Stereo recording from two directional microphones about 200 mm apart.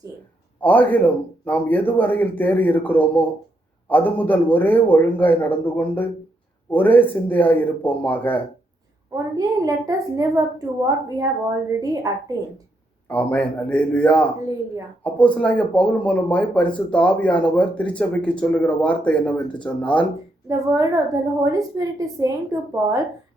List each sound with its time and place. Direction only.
0.6 s speech: 10° left (ahead or behind)
9.1 s a woman's voice: 15° right (ahead or behind)
13.1 s speech: 10° left (ahead or behind)
20.5 s a woman's voice: 15° right (ahead or behind)